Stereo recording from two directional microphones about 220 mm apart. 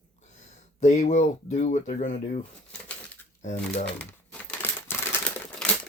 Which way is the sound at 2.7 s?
5° left (ahead or behind).